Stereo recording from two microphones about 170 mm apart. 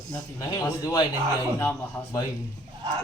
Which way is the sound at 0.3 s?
20° left (ahead or behind).